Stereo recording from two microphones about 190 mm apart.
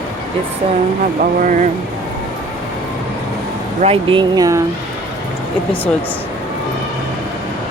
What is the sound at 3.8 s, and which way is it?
Speech, 25° right (ahead or behind).